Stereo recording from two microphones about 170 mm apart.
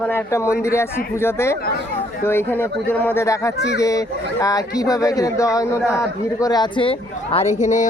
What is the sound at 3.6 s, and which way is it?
Speech, 80° left.